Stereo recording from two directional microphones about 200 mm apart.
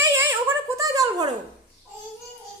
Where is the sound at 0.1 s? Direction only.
15° right (ahead or behind).